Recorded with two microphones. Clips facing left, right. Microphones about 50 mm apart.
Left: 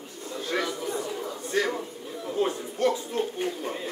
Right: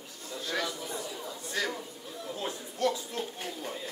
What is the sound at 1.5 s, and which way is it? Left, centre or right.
A man's voice, left.